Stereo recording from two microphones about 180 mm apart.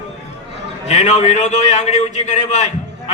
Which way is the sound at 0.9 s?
40° left (ahead or behind).